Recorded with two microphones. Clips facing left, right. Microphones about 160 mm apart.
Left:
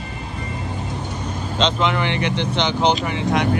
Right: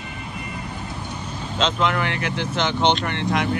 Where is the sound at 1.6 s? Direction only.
Centre (ahead or behind).